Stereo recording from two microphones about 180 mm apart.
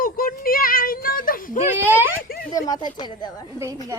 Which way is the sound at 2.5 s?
20° left (ahead or behind).